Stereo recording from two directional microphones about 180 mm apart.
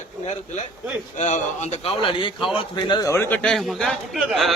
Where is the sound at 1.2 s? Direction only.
40° left (ahead or behind).